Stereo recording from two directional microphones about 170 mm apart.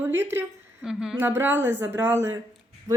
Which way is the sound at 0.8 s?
5° right (ahead or behind).